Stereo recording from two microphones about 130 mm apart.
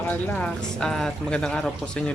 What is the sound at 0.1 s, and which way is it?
Speech, 10° left (ahead or behind).